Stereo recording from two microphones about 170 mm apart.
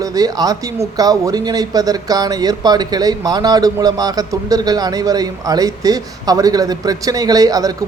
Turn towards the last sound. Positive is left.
turn(degrees=-20)  # may be behind; listen again after turning